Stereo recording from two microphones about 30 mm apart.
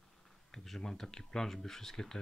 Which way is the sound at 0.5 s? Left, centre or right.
Centre.